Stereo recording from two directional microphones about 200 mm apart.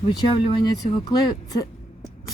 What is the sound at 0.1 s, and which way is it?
Speech, 20° left (ahead or behind).